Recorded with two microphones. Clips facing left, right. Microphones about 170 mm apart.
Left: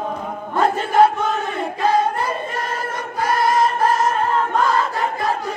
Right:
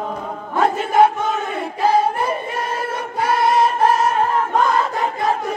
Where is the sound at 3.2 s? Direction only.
25° right (ahead or behind).